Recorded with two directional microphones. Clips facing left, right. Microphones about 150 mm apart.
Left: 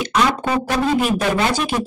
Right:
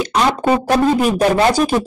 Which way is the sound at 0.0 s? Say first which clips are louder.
Right 3 dB; 35° right (ahead or behind).